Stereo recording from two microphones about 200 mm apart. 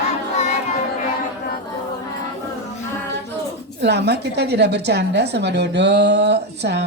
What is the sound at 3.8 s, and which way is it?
Speech, 55° right (ahead or behind).